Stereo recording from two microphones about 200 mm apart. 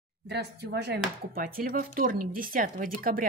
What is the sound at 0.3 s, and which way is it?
Speech, 55° right (ahead or behind).